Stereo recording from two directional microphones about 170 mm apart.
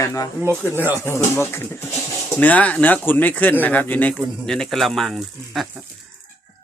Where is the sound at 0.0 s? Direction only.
20° left (ahead or behind); by 5.6 s centre (ahead or behind).